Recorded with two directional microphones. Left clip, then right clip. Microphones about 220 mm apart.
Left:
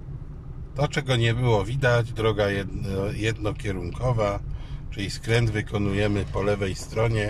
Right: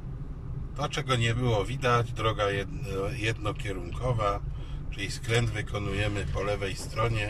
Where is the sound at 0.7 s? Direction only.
25° left (ahead or behind).